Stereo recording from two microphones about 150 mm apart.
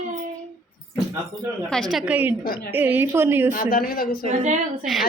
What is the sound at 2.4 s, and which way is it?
Speech, 75° left (ahead or behind).